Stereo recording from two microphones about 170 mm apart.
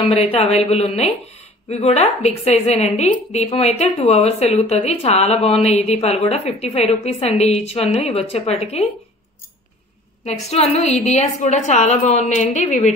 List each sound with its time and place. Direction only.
0.0 s speech: 35° left (ahead or behind)
10.2 s speech: 40° left (ahead or behind)